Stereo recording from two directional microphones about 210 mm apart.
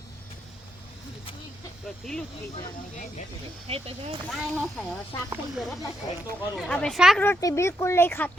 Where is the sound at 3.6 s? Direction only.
30° right (ahead or behind).